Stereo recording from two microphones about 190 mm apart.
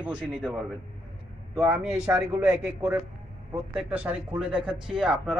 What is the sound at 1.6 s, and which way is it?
A man's voice, 10° right (ahead or behind).